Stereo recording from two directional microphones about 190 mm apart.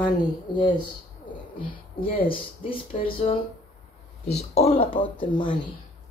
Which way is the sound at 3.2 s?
35° left (ahead or behind).